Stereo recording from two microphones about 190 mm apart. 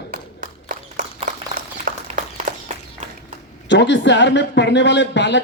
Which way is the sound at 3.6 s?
65° left (ahead or behind).